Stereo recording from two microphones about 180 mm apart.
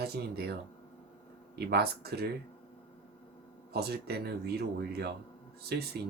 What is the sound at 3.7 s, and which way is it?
Speech, 60° right (ahead or behind).